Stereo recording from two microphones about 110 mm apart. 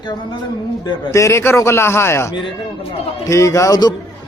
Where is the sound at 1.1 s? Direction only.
25° left (ahead or behind).